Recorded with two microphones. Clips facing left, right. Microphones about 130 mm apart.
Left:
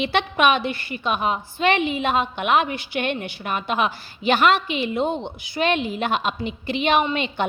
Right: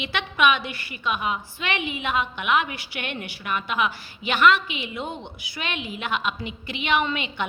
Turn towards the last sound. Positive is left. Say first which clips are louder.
# left 4 dB
turn(degrees=35)  # may be behind; listen again after turning